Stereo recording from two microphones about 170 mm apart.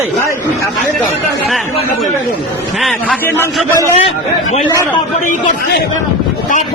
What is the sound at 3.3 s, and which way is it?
Speech, 15° left (ahead or behind).